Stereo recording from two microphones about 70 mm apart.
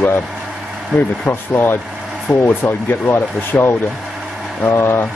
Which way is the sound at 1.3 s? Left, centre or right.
Left.